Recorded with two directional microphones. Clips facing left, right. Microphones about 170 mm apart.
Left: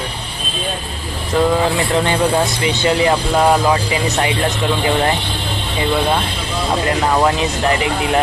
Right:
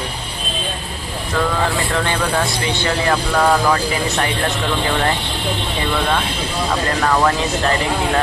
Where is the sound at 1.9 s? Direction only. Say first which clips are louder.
Left 4 dB; 20° left (ahead or behind).